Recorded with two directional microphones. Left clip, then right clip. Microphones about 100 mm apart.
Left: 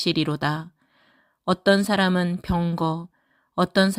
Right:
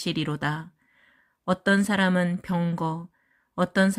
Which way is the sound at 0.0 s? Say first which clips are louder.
Left 5 dB; 40° left (ahead or behind).